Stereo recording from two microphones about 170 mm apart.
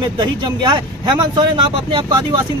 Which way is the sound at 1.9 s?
25° right (ahead or behind).